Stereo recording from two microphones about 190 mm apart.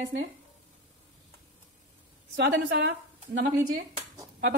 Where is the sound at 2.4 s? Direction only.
70° right (ahead or behind).